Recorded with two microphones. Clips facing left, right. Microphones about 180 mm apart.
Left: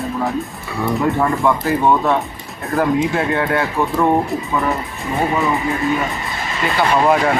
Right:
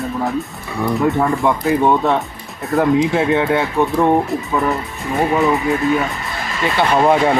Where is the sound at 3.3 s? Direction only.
20° right (ahead or behind).